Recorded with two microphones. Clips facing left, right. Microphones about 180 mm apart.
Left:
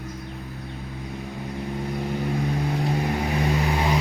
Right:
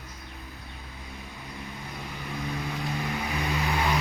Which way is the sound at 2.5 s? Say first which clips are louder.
Left 7 dB; 40° left (ahead or behind).